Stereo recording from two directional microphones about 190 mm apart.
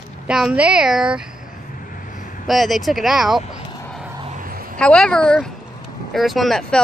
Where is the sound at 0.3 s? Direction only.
5° right (ahead or behind).